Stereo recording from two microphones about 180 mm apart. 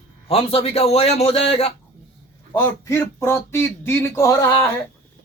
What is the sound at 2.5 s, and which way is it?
Speech, 15° left (ahead or behind).